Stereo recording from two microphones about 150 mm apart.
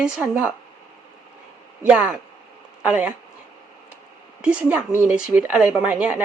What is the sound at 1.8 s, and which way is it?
A woman's voice, 10° right (ahead or behind).